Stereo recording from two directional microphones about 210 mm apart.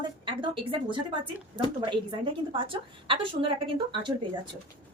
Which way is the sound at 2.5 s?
25° right (ahead or behind).